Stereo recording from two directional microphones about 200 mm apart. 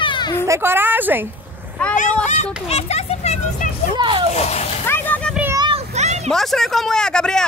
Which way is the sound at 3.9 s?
25° right (ahead or behind).